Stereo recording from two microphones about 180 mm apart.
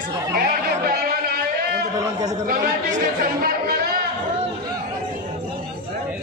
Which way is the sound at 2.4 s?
55° right (ahead or behind).